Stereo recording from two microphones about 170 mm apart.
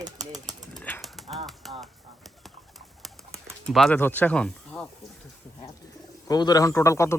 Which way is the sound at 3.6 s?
Centre (ahead or behind).